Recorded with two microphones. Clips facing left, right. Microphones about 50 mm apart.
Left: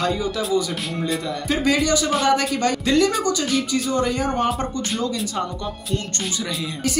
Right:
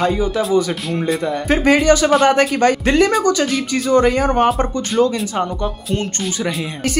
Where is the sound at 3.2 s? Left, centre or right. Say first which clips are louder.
Right 5 dB; right.